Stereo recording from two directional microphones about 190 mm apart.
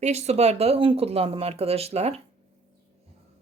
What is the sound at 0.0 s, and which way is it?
Speech, 35° right (ahead or behind).